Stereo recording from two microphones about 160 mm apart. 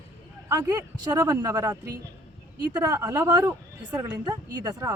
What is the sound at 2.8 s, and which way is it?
Speech, 20° right (ahead or behind).